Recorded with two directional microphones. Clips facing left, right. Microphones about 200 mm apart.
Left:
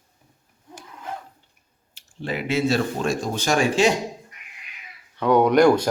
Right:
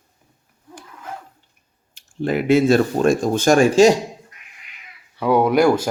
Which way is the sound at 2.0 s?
50° right (ahead or behind).